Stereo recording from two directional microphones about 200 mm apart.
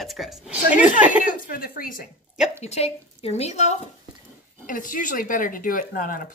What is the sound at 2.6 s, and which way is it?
Speech, 35° left (ahead or behind).